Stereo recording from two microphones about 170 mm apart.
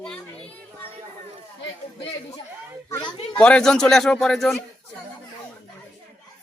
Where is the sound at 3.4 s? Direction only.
5° left (ahead or behind).